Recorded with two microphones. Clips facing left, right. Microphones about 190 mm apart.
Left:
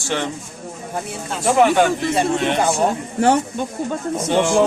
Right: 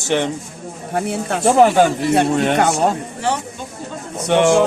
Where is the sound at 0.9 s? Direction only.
65° right (ahead or behind).